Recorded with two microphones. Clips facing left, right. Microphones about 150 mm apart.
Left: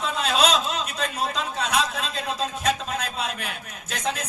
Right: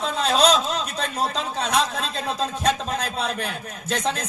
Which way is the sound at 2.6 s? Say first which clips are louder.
Right 3 dB; 35° right (ahead or behind).